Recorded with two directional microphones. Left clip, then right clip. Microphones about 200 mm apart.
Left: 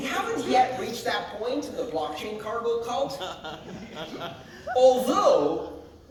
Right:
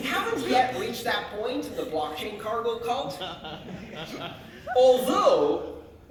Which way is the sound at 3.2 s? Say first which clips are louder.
Left 1 dB; 45° left (ahead or behind).